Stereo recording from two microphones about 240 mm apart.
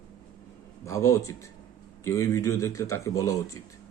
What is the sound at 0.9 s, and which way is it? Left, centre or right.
A man's voice, centre.